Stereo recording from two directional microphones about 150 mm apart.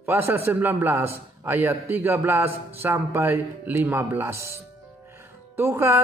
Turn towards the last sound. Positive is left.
turn(degrees=-15)  # may be behind; listen again after turning